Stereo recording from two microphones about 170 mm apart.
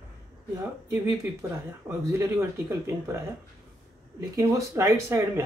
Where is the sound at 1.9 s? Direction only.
15° right (ahead or behind).